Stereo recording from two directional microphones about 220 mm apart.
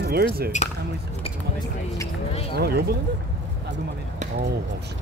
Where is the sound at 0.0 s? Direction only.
45° right (ahead or behind).